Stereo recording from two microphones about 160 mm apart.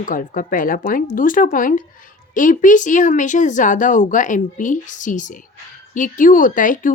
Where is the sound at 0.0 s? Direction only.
60° left (ahead or behind).